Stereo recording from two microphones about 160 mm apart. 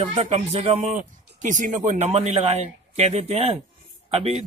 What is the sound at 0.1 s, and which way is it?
Speech, 45° right (ahead or behind).